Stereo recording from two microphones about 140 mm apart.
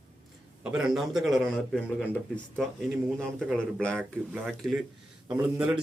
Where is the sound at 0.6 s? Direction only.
5° right (ahead or behind).